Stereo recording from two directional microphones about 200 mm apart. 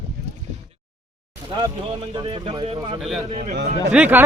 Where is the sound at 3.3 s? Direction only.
40° right (ahead or behind).